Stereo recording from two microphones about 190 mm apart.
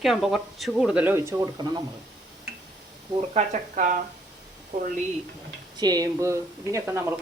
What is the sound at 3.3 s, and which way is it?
Speech, 40° right (ahead or behind).